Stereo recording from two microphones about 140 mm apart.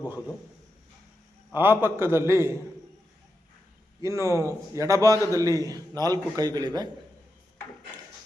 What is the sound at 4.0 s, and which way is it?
A man's voice, 20° right (ahead or behind).